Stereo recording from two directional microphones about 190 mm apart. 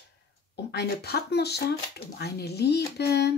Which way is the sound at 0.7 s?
60° left (ahead or behind).